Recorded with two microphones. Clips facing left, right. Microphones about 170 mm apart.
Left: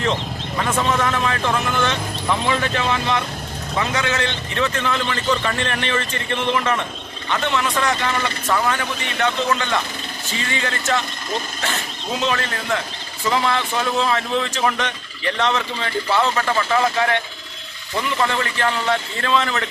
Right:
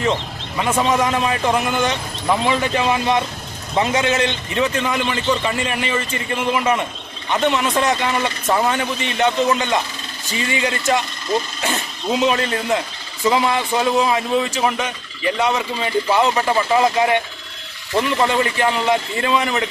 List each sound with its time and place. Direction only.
0.6 s a man's voice: 15° right (ahead or behind)